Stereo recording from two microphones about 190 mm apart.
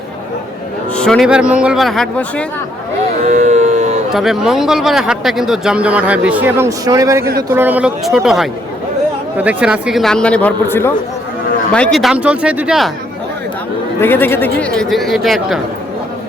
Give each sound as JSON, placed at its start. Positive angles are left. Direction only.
{"t": 0.9, "sound": "speech", "side_deg": 5}
{"t": 3.2, "sound": "a sound", "side_deg": -40}
{"t": 4.1, "sound": "speech", "side_deg": 0}
{"t": 14.0, "sound": "speech", "side_deg": 10}